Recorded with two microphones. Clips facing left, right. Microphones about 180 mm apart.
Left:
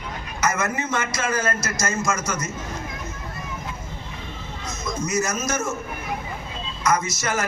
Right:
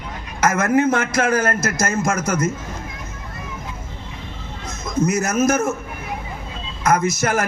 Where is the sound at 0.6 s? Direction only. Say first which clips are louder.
Right 8 dB; 55° right (ahead or behind).